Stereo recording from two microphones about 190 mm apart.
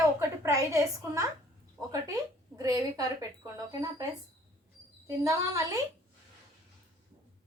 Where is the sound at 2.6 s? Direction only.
20° right (ahead or behind).